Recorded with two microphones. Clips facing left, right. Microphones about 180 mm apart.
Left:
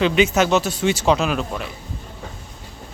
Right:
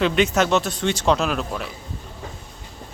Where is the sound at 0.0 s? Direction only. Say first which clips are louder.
Left 2 dB; centre (ahead or behind).